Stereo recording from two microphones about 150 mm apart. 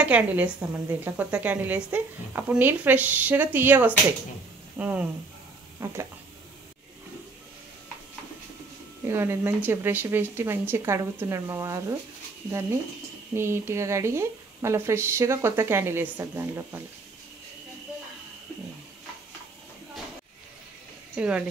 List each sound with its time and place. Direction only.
0.0 s speech: 10° right (ahead or behind)
9.0 s speech: 15° right (ahead or behind)
13.3 s speech: 15° right (ahead or behind)
21.2 s speech: 5° right (ahead or behind)